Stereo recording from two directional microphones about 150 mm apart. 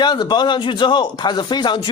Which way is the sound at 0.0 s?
30° left (ahead or behind).